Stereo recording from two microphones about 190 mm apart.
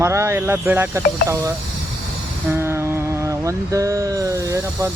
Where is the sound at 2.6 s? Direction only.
15° right (ahead or behind).